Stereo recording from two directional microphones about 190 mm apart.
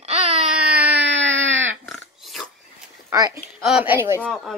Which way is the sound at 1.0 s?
75° right (ahead or behind).